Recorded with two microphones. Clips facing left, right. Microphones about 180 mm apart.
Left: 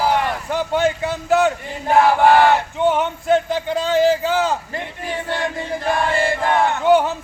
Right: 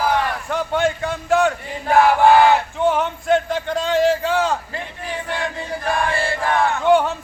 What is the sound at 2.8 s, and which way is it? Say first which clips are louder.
A man's voice: left 1 dB; centre (ahead or behind).